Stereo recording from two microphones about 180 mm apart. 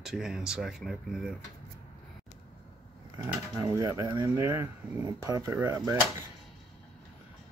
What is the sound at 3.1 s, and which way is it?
Speech, 20° right (ahead or behind).